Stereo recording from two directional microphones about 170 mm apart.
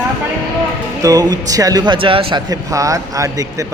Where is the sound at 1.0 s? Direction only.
20° right (ahead or behind).